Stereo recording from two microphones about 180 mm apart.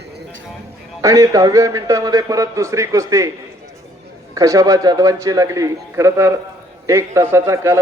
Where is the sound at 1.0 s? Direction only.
20° right (ahead or behind).